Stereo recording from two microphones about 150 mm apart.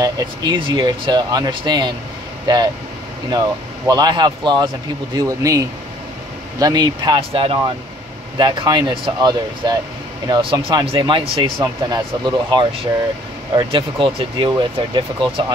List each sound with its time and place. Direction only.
0.0 s speech: 30° right (ahead or behind)